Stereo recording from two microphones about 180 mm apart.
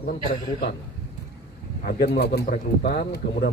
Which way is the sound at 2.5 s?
55° left (ahead or behind).